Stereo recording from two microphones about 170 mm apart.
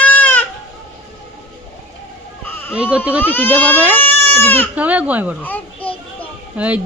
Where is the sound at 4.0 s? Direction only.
10° left (ahead or behind).